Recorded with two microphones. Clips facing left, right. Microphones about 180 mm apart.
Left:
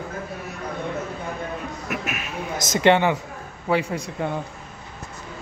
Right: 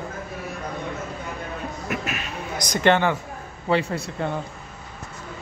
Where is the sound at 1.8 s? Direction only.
5° left (ahead or behind).